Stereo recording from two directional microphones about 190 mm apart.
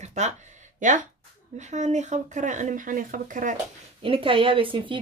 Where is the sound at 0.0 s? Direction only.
35° right (ahead or behind).